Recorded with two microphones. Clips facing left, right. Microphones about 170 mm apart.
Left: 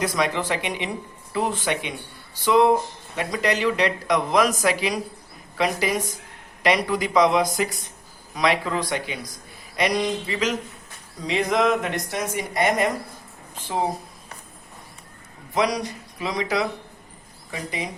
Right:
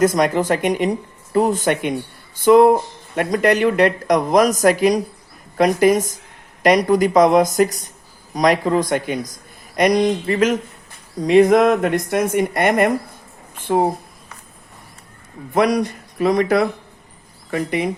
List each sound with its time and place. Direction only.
0.0 s speech: 45° right (ahead or behind)
15.5 s speech: 55° right (ahead or behind)